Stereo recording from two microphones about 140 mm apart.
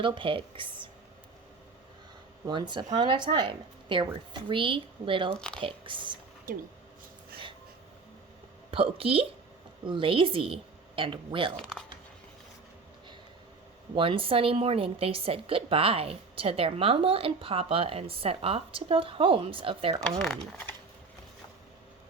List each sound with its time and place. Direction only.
0.0 s a woman's voice: 35° right (ahead or behind)
2.5 s a woman's voice: 35° right (ahead or behind)
6.5 s speech: 90° right
8.7 s a woman's voice: 40° right (ahead or behind)
11.5 s speech: 5° left (ahead or behind)
13.9 s a woman's voice: 40° right (ahead or behind)
20.0 s speech: 5° left (ahead or behind)